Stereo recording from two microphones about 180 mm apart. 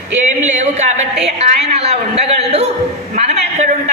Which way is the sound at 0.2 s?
40° right (ahead or behind).